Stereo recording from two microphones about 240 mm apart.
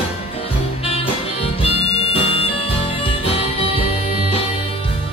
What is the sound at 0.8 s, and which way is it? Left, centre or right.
Music, left.